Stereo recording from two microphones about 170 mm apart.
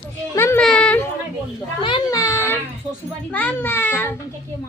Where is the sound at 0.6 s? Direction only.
5° left (ahead or behind).